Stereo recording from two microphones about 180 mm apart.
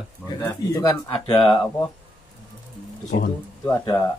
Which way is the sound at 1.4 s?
5° left (ahead or behind).